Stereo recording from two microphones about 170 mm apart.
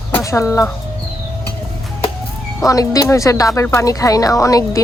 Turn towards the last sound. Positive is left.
turn(degrees=20)  # may be behind; listen again after turning